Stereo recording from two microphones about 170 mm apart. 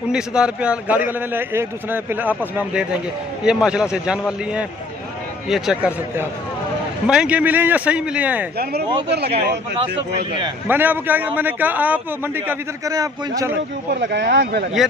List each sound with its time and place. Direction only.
0.1 s a man's voice: 5° right (ahead or behind)
9.1 s speech: 75° right (ahead or behind)
10.7 s a man's voice: 10° right (ahead or behind)
13.9 s speech: 80° right